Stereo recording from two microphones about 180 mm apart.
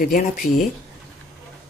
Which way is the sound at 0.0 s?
50° left (ahead or behind).